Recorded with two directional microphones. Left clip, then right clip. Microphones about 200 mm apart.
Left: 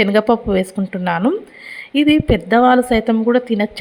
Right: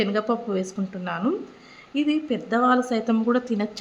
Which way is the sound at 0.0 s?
35° left (ahead or behind).